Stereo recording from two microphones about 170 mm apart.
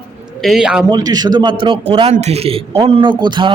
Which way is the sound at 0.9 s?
25° right (ahead or behind).